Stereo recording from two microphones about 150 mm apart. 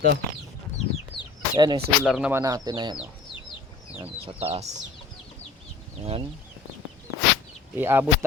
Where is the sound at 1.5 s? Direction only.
30° right (ahead or behind).